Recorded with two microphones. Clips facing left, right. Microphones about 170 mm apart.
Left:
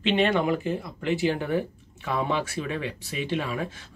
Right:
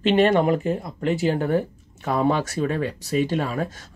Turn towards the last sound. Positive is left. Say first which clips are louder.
# right 5 dB
turn(degrees=-40)  # may be behind; listen again after turning